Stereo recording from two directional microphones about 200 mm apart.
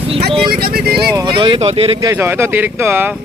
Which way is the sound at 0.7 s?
50° right (ahead or behind).